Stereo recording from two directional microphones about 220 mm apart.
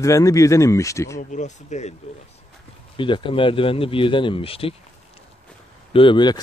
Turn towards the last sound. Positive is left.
turn(degrees=20)  # may be behind; listen again after turning